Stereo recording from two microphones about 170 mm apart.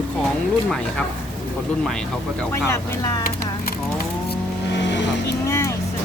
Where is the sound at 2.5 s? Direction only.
15° left (ahead or behind).